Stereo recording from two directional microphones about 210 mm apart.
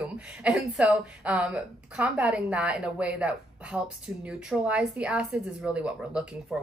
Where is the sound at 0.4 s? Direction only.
5° right (ahead or behind).